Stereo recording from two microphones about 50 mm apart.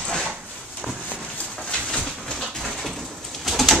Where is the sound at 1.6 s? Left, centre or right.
Left.